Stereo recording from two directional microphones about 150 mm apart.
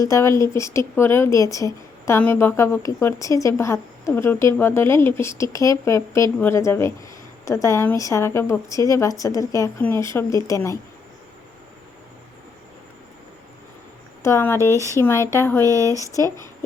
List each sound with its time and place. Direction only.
0.0 s speech: 20° left (ahead or behind)
14.2 s speech: 15° left (ahead or behind)
14.6 s speech: 20° right (ahead or behind)
14.9 s speech: 20° left (ahead or behind)
15.6 s speech: 20° right (ahead or behind)
16.0 s speech: 20° left (ahead or behind)